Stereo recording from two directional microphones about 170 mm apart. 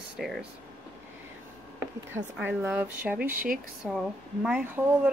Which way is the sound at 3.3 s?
55° right (ahead or behind).